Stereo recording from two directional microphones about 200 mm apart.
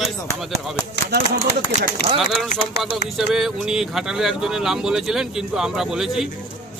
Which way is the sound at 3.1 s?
Centre (ahead or behind).